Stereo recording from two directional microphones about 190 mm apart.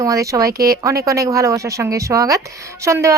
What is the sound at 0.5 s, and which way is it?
Speech, 55° right (ahead or behind).